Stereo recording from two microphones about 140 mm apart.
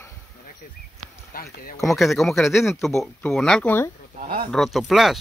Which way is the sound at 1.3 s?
90° left.